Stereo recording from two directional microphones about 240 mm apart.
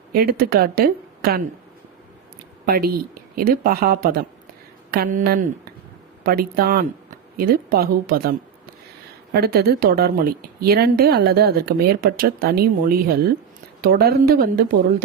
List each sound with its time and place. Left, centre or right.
0.1 s speech: right
2.6 s speech: right